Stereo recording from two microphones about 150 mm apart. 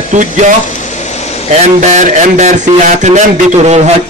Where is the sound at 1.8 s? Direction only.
55° right (ahead or behind).